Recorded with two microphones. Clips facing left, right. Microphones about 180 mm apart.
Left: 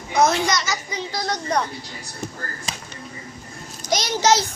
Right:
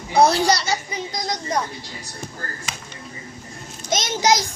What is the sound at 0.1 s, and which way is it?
Speech, 35° right (ahead or behind).